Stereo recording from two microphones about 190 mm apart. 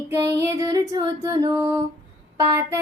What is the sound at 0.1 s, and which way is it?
Music, 15° right (ahead or behind).